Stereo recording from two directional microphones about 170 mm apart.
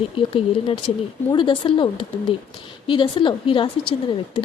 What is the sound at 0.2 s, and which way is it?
Speech, 30° left (ahead or behind).